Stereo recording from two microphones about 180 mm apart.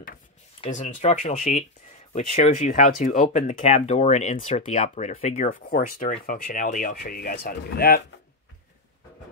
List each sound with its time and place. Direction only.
0.7 s speech: 45° left (ahead or behind); by 8.0 s 60° left (ahead or behind)